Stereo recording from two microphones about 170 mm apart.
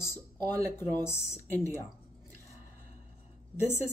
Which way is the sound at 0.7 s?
15° left (ahead or behind).